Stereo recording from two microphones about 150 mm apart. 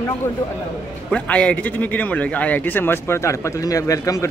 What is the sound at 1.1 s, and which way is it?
A man's voice, 10° left (ahead or behind).